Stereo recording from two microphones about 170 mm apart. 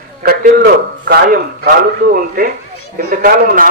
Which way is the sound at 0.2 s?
55° right (ahead or behind).